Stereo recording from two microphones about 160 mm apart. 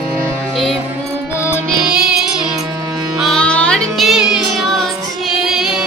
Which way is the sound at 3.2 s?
5° left (ahead or behind).